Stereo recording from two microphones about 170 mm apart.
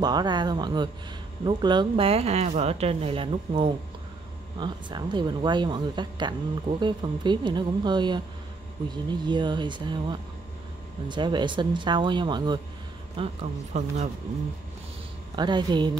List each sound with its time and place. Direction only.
0.0 s speech: 25° right (ahead or behind)
13.2 s speech: 40° right (ahead or behind)
15.3 s speech: 25° right (ahead or behind)